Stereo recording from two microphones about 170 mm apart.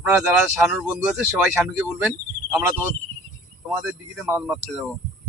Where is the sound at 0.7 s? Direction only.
5° right (ahead or behind).